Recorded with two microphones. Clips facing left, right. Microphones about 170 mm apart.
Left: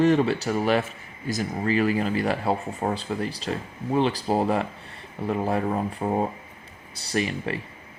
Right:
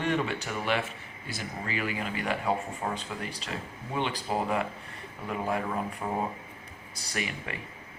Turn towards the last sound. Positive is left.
turn(degrees=35)  # may be behind; listen again after turning